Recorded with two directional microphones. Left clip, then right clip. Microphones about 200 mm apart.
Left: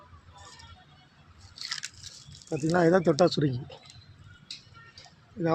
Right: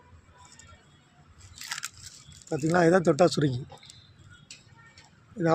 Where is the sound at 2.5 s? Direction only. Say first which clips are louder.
Right 1 dB; 5° right (ahead or behind).